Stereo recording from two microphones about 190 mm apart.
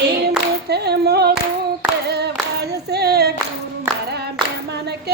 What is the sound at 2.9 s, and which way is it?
Clapping, 55° right (ahead or behind).